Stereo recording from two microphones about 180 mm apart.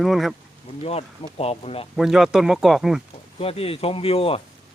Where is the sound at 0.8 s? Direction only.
35° left (ahead or behind).